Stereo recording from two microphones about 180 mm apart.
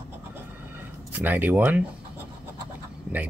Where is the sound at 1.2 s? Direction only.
10° right (ahead or behind).